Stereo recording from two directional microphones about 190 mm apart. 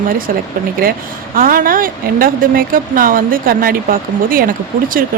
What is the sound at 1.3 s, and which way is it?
Speech, 50° right (ahead or behind).